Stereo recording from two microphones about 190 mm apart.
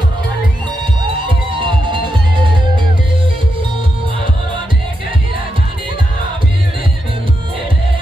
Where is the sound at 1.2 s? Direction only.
25° right (ahead or behind).